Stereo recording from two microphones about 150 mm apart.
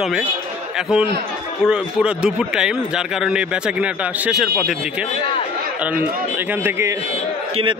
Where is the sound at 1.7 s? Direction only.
5° right (ahead or behind).